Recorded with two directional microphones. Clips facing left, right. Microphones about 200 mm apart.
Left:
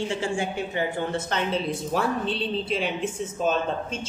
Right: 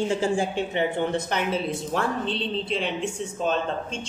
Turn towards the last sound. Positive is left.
turn(degrees=5)  # may be behind; listen again after turning